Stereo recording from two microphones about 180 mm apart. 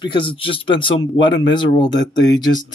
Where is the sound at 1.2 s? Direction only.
90° left.